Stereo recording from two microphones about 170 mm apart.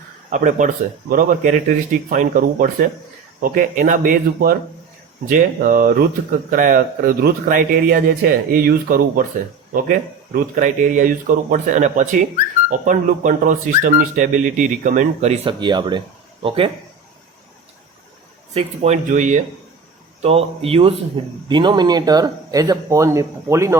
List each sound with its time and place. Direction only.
0.3 s speech: 50° right (ahead or behind)
15.4 s speech: 25° right (ahead or behind)
18.5 s speech: 40° right (ahead or behind)
20.2 s speech: 35° right (ahead or behind); by 23.7 s 15° right (ahead or behind)